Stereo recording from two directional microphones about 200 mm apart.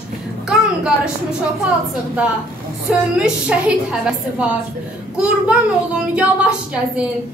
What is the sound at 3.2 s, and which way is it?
A child's voice, 5° right (ahead or behind).